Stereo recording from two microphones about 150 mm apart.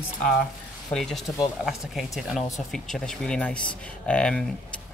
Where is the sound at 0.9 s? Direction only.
Centre (ahead or behind).